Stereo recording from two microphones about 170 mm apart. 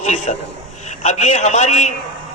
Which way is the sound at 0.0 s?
40° left (ahead or behind).